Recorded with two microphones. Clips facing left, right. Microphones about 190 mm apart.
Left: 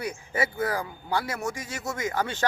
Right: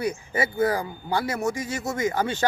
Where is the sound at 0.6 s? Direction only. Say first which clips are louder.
Right 5 dB; 20° right (ahead or behind).